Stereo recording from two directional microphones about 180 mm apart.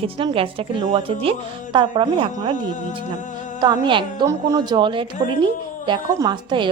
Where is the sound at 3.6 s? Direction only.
25° right (ahead or behind).